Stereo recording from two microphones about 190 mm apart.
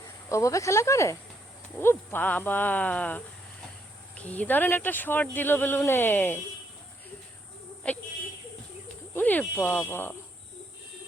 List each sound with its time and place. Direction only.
0.3 s speech: 15° left (ahead or behind)
7.9 s speech: 5° left (ahead or behind)
9.1 s speech: 10° left (ahead or behind)